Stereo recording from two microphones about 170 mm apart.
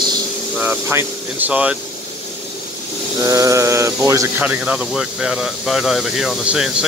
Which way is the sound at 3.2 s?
20° right (ahead or behind).